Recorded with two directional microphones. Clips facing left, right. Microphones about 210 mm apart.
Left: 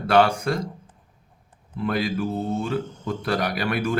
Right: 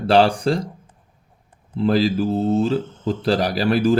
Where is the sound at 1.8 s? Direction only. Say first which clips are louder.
Right 7 dB; 30° right (ahead or behind).